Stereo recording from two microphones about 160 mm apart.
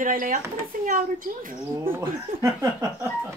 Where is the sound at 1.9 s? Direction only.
15° right (ahead or behind).